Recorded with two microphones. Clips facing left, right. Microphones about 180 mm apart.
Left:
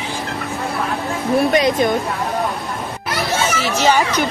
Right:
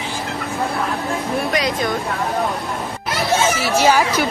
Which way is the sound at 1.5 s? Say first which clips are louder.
Left 5 dB; 25° left (ahead or behind).